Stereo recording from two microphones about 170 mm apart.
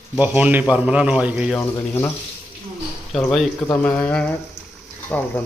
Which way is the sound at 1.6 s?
15° left (ahead or behind).